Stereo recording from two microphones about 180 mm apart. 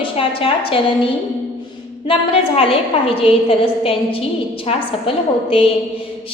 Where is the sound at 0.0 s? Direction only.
30° left (ahead or behind).